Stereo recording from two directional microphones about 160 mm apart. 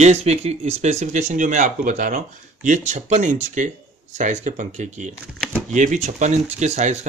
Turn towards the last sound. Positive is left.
turn(degrees=-45)  # may be behind; listen again after turning